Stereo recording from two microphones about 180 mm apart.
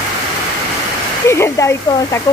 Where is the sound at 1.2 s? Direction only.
15° left (ahead or behind).